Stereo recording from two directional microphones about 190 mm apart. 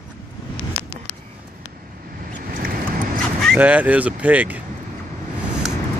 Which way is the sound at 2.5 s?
45° right (ahead or behind).